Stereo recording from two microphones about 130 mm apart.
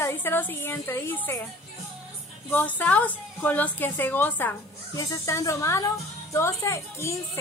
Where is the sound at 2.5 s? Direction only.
15° left (ahead or behind).